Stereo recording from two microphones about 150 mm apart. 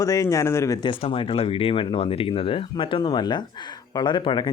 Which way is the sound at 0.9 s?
35° left (ahead or behind).